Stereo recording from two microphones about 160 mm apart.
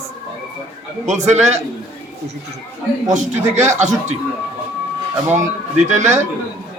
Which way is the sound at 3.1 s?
50° right (ahead or behind).